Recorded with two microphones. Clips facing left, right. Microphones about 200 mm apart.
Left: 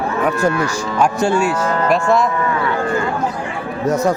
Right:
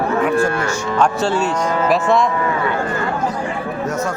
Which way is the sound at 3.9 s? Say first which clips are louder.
Left 8 dB; 35° left (ahead or behind).